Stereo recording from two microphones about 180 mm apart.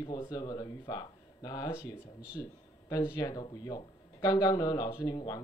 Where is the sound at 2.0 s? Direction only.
5° right (ahead or behind).